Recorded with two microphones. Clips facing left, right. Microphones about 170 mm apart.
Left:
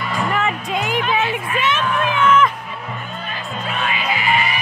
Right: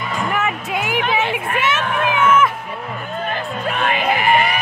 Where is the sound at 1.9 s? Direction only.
60° right (ahead or behind).